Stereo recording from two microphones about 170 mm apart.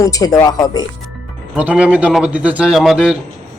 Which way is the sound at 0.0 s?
20° left (ahead or behind).